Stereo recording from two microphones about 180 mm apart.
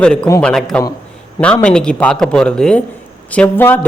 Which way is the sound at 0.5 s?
5° left (ahead or behind).